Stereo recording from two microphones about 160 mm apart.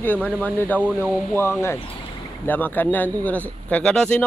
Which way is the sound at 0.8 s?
10° right (ahead or behind).